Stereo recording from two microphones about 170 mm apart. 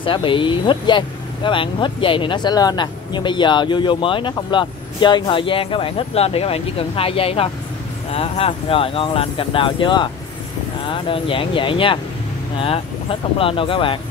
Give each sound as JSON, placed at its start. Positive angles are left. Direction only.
{"t": 0.0, "sound": "speech", "side_deg": 30}